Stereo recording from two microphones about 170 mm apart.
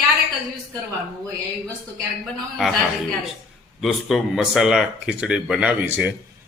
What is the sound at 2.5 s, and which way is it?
Speech, centre (ahead or behind).